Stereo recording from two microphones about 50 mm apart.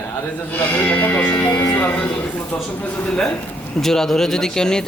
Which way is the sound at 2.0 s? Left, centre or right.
Left.